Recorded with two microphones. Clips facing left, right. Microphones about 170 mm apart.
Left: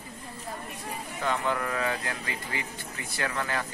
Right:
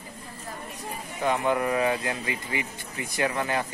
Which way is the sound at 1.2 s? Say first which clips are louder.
Right 5 dB; 15° right (ahead or behind).